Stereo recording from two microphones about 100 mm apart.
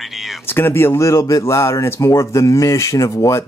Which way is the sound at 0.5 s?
20° left (ahead or behind).